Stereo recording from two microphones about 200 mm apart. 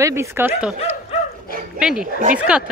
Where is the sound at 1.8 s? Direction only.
5° right (ahead or behind).